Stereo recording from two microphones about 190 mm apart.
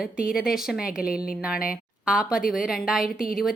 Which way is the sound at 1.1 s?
50° left (ahead or behind).